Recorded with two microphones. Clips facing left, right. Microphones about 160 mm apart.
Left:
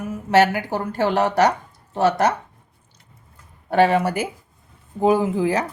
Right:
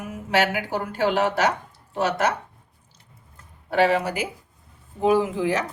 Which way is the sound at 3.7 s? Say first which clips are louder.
Left 3 dB; 55° left (ahead or behind).